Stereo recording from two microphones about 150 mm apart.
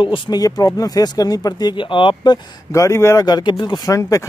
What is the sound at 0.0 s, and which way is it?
Speech, 30° left (ahead or behind).